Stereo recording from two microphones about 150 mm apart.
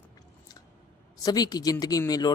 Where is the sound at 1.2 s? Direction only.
25° left (ahead or behind).